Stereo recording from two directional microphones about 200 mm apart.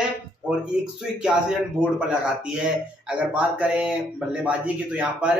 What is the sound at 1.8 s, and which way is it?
Speech, 5° right (ahead or behind).